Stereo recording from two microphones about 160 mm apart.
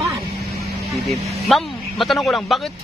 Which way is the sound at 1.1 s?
Centre (ahead or behind).